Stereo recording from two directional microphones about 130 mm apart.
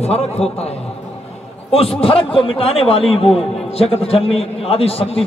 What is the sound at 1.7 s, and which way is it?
A man's voice, 50° left (ahead or behind).